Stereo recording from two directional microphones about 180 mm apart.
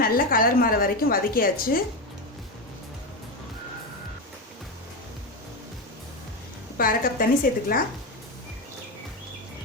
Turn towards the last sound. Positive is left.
turn(degrees=50)  # may be behind; listen again after turning